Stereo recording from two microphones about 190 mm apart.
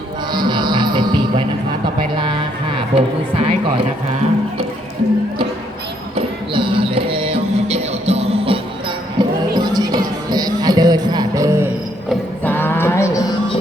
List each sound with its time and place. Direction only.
0.3 s music: 25° right (ahead or behind)
2.1 s a sound: 25° right (ahead or behind)
6.1 s music: 30° right (ahead or behind)
9.1 s music: 20° right (ahead or behind)
12.0 s music: 10° left (ahead or behind)